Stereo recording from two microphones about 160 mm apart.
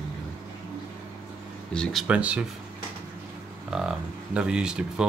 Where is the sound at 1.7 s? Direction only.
5° left (ahead or behind).